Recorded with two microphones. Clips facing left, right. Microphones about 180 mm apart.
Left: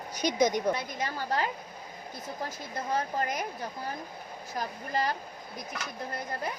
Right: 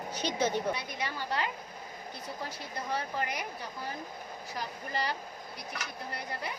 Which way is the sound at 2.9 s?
45° left (ahead or behind).